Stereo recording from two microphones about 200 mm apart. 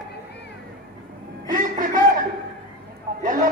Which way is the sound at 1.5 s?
40° right (ahead or behind).